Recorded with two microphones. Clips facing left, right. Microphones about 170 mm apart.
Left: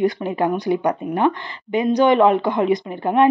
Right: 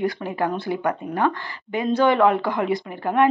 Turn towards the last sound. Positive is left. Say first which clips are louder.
# left 3 dB
turn(degrees=20)  # may be behind; listen again after turning